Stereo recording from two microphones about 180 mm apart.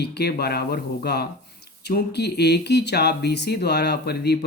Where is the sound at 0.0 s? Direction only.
65° left (ahead or behind).